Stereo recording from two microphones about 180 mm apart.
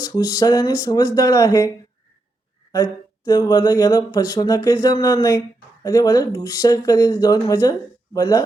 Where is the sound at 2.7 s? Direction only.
20° left (ahead or behind).